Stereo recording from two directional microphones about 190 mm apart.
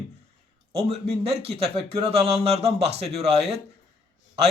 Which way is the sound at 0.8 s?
30° right (ahead or behind).